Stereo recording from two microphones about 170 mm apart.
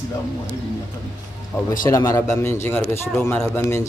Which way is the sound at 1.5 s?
10° left (ahead or behind).